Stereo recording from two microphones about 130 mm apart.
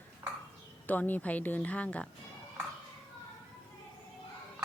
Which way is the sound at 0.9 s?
15° left (ahead or behind).